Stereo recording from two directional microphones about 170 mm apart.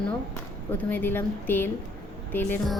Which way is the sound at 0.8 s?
10° left (ahead or behind).